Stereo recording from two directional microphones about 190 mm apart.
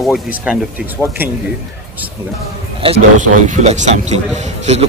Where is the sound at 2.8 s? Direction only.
35° right (ahead or behind).